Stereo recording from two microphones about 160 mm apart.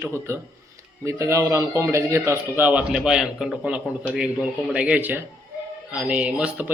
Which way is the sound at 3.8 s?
5° left (ahead or behind).